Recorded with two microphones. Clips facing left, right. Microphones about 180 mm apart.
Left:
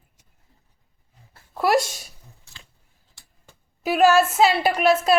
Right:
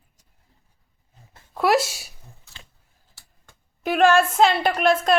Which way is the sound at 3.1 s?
5° left (ahead or behind).